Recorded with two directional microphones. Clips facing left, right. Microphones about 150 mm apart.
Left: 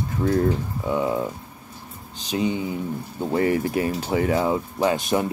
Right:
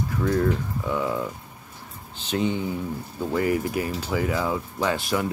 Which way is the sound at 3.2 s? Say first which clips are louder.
Left 2 dB; 25° left (ahead or behind).